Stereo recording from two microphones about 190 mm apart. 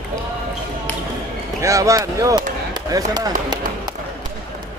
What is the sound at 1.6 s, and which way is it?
Speech, 15° right (ahead or behind).